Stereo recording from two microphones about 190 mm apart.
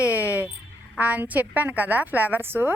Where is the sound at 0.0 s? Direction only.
10° right (ahead or behind).